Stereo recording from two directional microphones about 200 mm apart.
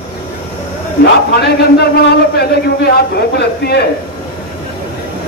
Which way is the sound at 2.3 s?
55° left (ahead or behind).